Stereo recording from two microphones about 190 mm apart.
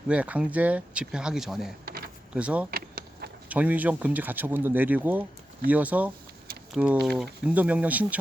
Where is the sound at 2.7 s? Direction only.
55° right (ahead or behind).